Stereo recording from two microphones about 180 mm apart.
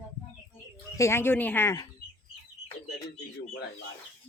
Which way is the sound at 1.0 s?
15° left (ahead or behind).